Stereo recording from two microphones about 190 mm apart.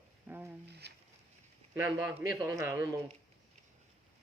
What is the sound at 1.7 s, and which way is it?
Speech, 15° right (ahead or behind).